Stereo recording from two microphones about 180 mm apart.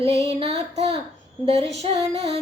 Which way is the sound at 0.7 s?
35° right (ahead or behind).